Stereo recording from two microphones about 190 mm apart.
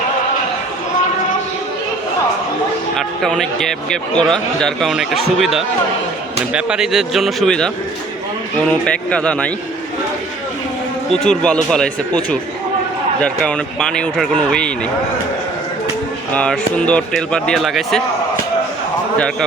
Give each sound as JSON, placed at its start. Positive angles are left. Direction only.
{"t": 2.9, "sound": "a man's voice", "side_deg": 0}
{"t": 8.7, "sound": "a man's voice", "side_deg": 5}
{"t": 11.1, "sound": "a man's voice", "side_deg": 5}
{"t": 16.3, "sound": "a man's voice", "side_deg": 5}
{"t": 19.1, "sound": "a man's voice", "side_deg": 5}